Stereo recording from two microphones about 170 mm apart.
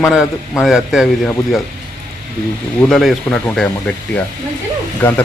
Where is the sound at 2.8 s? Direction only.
Centre (ahead or behind).